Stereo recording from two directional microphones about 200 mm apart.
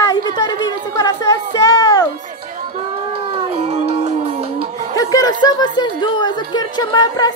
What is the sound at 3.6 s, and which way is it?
Music, 30° right (ahead or behind).